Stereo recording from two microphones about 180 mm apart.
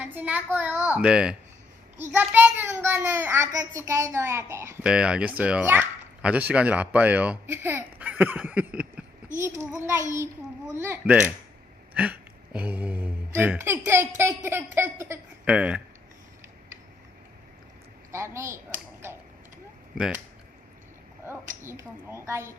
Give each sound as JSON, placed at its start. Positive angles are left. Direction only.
{"t": 0.1, "sound": "speech", "side_deg": -10}
{"t": 18.1, "sound": "speech", "side_deg": -15}
{"t": 20.0, "sound": "speech", "side_deg": -5}
{"t": 21.2, "sound": "speech", "side_deg": -15}